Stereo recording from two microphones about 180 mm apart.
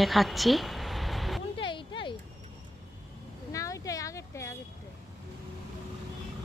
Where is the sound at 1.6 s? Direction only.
25° left (ahead or behind).